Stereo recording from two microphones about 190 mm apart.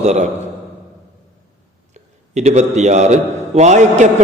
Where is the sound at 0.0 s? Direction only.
35° right (ahead or behind).